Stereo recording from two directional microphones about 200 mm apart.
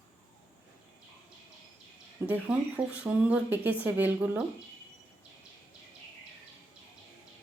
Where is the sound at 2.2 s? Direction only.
5° right (ahead or behind).